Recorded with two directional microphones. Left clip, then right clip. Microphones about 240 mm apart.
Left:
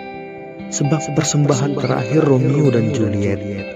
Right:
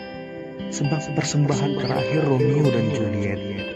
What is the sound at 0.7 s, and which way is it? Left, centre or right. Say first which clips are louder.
Speech: left 7 dB; left.